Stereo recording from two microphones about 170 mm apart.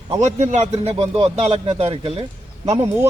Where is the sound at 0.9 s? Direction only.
35° right (ahead or behind).